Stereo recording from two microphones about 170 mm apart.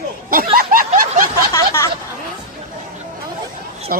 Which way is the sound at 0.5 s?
60° right (ahead or behind).